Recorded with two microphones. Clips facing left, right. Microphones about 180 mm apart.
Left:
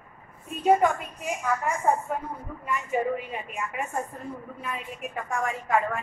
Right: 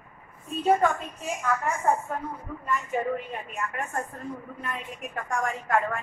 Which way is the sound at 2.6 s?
10° left (ahead or behind).